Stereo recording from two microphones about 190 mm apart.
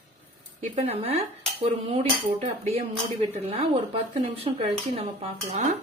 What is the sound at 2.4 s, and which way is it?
Speech, 35° right (ahead or behind).